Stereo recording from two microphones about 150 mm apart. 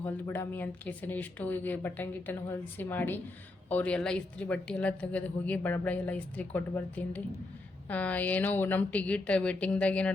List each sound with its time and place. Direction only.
0.0 s speech: 15° left (ahead or behind)